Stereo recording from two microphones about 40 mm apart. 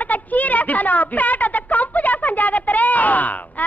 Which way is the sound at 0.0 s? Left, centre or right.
Left.